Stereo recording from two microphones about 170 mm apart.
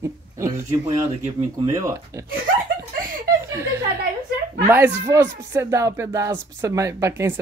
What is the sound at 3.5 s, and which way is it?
Chuckle, 20° right (ahead or behind).